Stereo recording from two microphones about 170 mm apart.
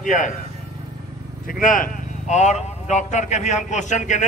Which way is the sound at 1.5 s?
55° left (ahead or behind).